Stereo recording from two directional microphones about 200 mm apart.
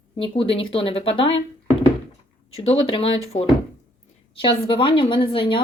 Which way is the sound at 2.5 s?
30° left (ahead or behind).